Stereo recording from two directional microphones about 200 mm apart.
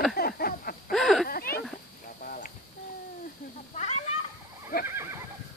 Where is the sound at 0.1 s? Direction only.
50° left (ahead or behind).